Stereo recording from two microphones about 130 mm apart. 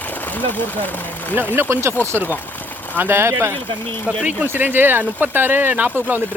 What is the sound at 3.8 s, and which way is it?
Speech, 15° left (ahead or behind).